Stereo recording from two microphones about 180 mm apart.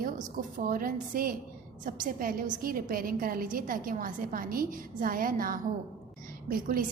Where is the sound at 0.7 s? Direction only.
50° right (ahead or behind).